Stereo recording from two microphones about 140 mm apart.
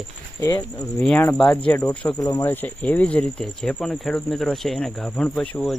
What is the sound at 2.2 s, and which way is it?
Speech, 25° left (ahead or behind).